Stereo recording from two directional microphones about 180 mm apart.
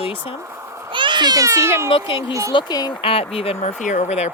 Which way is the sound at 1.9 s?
30° left (ahead or behind).